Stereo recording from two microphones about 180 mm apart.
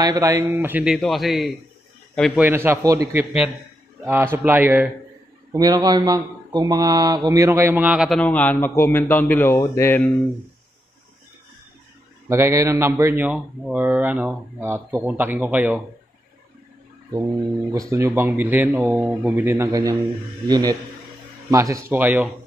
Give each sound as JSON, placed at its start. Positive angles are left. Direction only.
{"t": 0.0, "sound": "a man's voice", "side_deg": -15}
{"t": 0.9, "sound": "a man's voice", "side_deg": 0}
{"t": 2.3, "sound": "a man's voice", "side_deg": -10}
{"t": 5.5, "sound": "a man's voice", "side_deg": -20}
{"t": 8.2, "sound": "a man's voice", "side_deg": 10}
{"t": 12.3, "sound": "a man's voice", "side_deg": -15}
{"t": 17.6, "sound": "a man's voice", "side_deg": -15}